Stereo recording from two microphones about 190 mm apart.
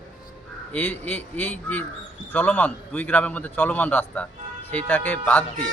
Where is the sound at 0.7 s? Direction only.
10° left (ahead or behind).